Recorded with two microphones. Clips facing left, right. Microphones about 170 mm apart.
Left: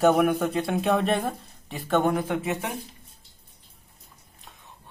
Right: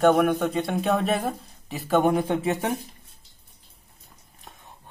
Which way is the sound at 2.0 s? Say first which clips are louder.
Right 3 dB; 25° right (ahead or behind).